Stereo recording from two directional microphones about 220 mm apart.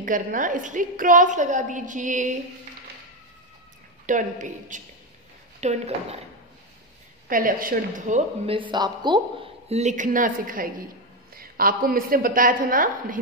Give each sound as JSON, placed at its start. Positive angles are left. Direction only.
{"t": 0.0, "sound": "speech", "side_deg": -35}
{"t": 4.0, "sound": "speech", "side_deg": -35}
{"t": 7.2, "sound": "speech", "side_deg": -40}